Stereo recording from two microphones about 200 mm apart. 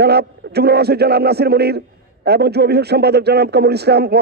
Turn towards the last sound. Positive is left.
turn(degrees=-55)  # may be behind; listen again after turning